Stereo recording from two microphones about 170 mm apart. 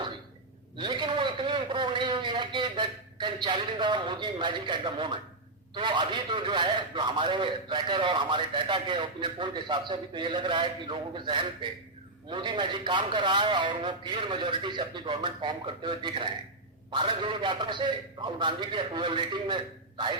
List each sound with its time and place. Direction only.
0.8 s a man's voice: 25° right (ahead or behind)